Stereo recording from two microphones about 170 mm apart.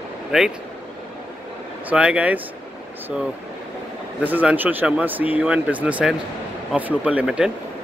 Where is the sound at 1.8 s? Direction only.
5° right (ahead or behind).